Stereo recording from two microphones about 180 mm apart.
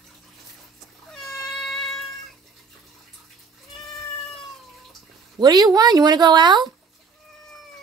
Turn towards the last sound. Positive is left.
turn(degrees=-25)  # may be behind; listen again after turning